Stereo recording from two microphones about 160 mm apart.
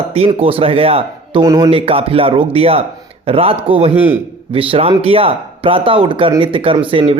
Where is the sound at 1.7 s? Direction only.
35° right (ahead or behind).